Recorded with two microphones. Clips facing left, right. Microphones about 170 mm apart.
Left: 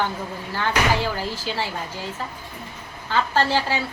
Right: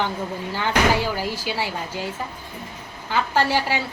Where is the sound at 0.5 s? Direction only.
15° right (ahead or behind).